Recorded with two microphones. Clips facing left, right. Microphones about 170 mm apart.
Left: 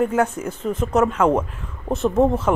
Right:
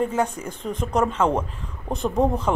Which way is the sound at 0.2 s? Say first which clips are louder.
Left 4 dB; 5° left (ahead or behind).